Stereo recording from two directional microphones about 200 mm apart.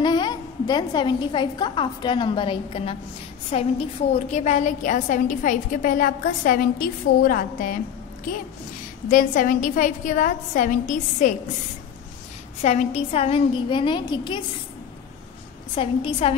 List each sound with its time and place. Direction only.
0.0 s a woman's voice: 20° left (ahead or behind); by 7.8 s 45° left (ahead or behind)
9.1 s a woman's voice: 40° left (ahead or behind)
12.6 s a woman's voice: 35° left (ahead or behind)
15.7 s a woman's voice: 25° left (ahead or behind)